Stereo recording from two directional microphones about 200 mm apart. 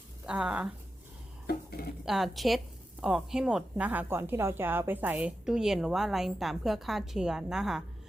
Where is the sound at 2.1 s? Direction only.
Centre (ahead or behind).